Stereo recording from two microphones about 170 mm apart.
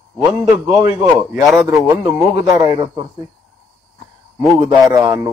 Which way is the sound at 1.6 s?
20° right (ahead or behind).